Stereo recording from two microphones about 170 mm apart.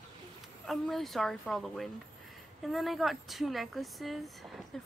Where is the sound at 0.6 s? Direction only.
Centre (ahead or behind).